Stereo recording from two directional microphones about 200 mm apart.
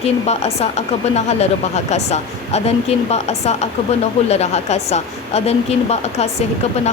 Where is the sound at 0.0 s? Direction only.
30° left (ahead or behind).